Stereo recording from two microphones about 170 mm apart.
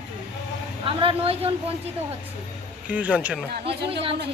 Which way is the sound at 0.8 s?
30° right (ahead or behind).